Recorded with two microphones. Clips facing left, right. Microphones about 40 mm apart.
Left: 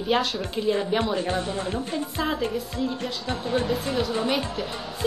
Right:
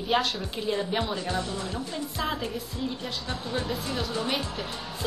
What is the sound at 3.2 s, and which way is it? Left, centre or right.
Speech, left.